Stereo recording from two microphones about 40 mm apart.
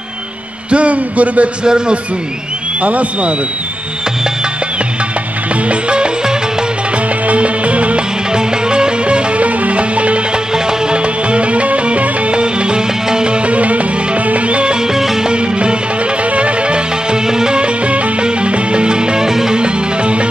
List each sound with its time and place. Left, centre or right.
0.7 s speech: right
1.6 s a man's voice: right
2.8 s speech: right
5.7 s music: right
8.3 s music: right
10.5 s music: centre
11.2 s music: right; by 19.6 s centre
19.6 s music: right